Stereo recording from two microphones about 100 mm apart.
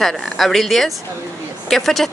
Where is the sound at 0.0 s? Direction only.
Centre (ahead or behind).